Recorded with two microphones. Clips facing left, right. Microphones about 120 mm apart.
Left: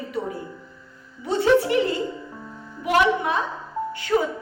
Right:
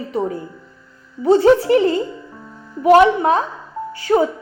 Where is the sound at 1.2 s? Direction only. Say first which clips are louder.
Right 7 dB; 40° right (ahead or behind).